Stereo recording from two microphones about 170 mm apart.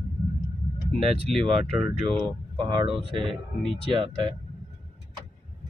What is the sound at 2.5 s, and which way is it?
Speech, 30° right (ahead or behind).